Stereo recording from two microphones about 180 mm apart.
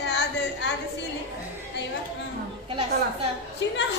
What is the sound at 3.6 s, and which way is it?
Speech, 80° left.